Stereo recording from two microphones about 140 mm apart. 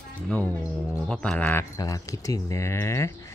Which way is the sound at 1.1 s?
10° left (ahead or behind).